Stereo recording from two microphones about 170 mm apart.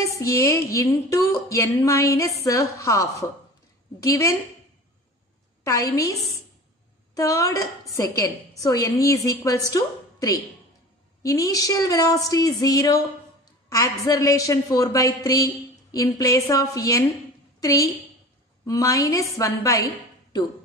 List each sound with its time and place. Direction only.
0.0 s a woman's voice: 20° left (ahead or behind)
5.6 s a woman's voice: 20° left (ahead or behind)
7.2 s a woman's voice: 20° left (ahead or behind)